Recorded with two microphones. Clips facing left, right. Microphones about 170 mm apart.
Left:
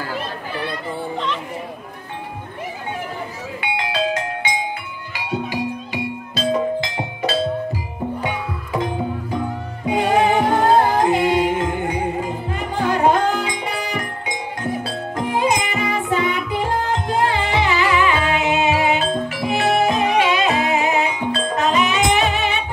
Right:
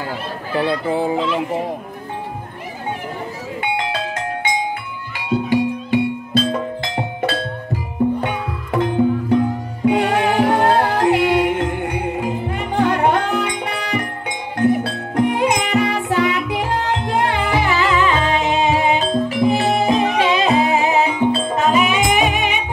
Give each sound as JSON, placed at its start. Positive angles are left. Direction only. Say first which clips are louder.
{"t": 0.6, "sound": "speech", "louder": "right 10 dB", "side_deg": -90}
{"t": 1.1, "sound": "speech", "louder": "right 5 dB", "side_deg": -5}
{"t": 3.6, "sound": "music", "louder": "left 1 dB", "side_deg": -50}
{"t": 9.8, "sound": "music", "louder": "right 1 dB", "side_deg": -70}
{"t": 17.1, "sound": "music", "louder": "right 1 dB", "side_deg": -60}
{"t": 17.6, "sound": "music", "louder": "even", "side_deg": 10}
{"t": 19.2, "sound": "music", "louder": "right 4 dB", "side_deg": -35}
{"t": 21.3, "sound": "music", "louder": "right 3 dB", "side_deg": -5}